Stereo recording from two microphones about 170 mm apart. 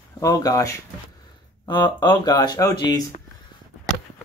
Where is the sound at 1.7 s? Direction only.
30° left (ahead or behind).